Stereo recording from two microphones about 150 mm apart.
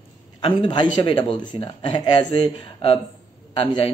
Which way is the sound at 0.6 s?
30° left (ahead or behind).